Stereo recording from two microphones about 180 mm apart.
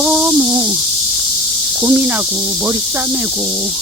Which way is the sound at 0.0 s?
5° right (ahead or behind).